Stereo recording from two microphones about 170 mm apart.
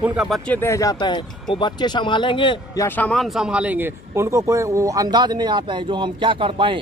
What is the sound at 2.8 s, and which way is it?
Speech, 10° left (ahead or behind).